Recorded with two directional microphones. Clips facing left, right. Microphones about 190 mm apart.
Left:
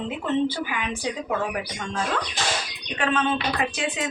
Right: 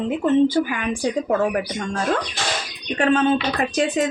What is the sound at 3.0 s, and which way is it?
A woman's voice, 40° right (ahead or behind).